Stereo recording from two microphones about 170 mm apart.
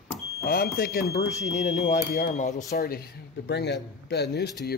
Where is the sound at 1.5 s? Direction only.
40° left (ahead or behind).